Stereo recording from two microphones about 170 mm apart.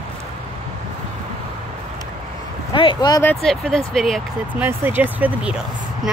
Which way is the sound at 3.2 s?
5° left (ahead or behind).